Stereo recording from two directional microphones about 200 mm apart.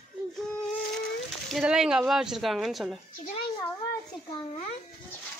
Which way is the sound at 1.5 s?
5° right (ahead or behind).